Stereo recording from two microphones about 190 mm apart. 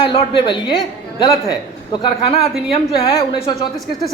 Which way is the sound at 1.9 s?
30° left (ahead or behind).